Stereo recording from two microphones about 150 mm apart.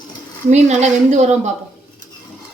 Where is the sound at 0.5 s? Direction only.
50° right (ahead or behind).